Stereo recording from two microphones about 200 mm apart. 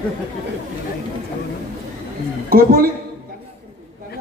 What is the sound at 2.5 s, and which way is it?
Speech, 45° right (ahead or behind).